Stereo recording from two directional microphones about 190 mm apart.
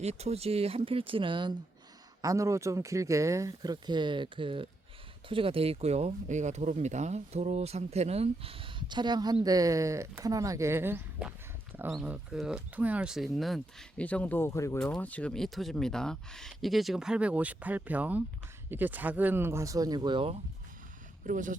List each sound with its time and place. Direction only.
0.0 s speech: 35° right (ahead or behind)
21.2 s speech: 45° right (ahead or behind)